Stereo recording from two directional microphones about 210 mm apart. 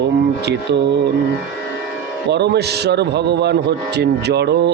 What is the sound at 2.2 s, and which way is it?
Speech, 55° right (ahead or behind).